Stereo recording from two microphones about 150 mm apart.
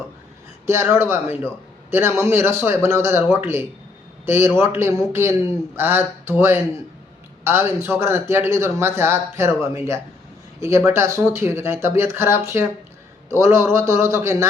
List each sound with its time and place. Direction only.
0.9 s speech: 15° right (ahead or behind)